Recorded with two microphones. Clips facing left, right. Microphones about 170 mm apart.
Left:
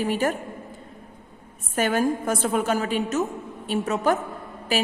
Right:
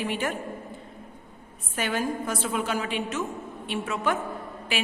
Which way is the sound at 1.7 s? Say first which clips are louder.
Left 6 dB; 45° left (ahead or behind).